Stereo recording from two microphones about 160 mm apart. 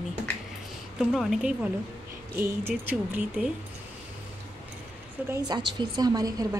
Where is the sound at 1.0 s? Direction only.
Centre (ahead or behind).